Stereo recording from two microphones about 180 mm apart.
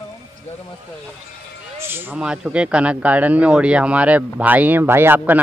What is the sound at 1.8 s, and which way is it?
Speech, 10° right (ahead or behind).